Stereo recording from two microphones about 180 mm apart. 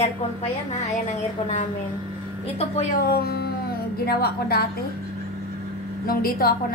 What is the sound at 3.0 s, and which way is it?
A woman's voice, 60° left (ahead or behind).